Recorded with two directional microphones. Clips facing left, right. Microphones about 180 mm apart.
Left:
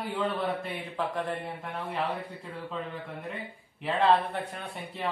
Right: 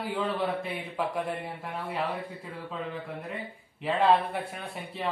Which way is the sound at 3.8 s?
10° right (ahead or behind).